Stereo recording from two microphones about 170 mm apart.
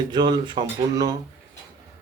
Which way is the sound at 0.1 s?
25° right (ahead or behind).